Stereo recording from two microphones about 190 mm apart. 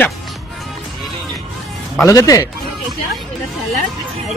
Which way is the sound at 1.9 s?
15° left (ahead or behind).